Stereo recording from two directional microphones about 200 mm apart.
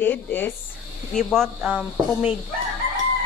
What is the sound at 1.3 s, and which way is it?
Speech, 5° right (ahead or behind).